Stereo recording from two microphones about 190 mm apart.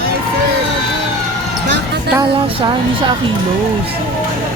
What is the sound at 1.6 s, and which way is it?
Music, 65° right (ahead or behind).